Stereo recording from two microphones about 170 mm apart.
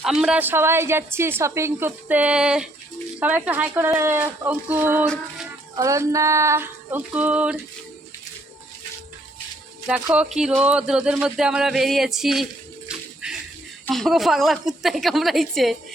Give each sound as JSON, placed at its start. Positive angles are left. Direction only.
{"t": 0.0, "sound": "a woman's voice", "side_deg": -5}
{"t": 5.0, "sound": "speech", "side_deg": 5}
{"t": 5.7, "sound": "a woman's voice", "side_deg": -20}
{"t": 9.8, "sound": "speech", "side_deg": -5}
{"t": 12.9, "sound": "a sound", "side_deg": -5}
{"t": 13.8, "sound": "speech", "side_deg": 0}